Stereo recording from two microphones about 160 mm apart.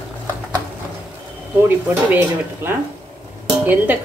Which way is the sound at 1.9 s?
10° right (ahead or behind).